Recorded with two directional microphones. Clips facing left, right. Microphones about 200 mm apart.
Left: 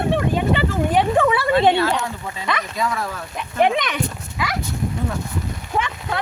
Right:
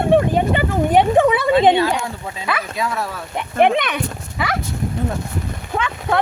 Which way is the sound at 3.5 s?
55° right (ahead or behind).